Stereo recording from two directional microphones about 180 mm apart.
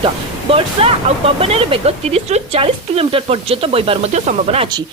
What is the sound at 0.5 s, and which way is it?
Speech, 30° right (ahead or behind).